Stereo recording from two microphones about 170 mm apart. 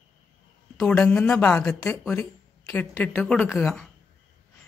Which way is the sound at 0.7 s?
5° left (ahead or behind).